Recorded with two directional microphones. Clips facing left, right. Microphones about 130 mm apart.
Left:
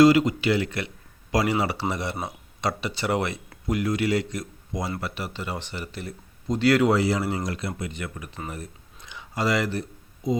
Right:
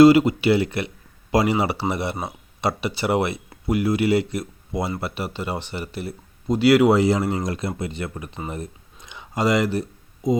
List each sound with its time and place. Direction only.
0.0 s speech: 10° right (ahead or behind)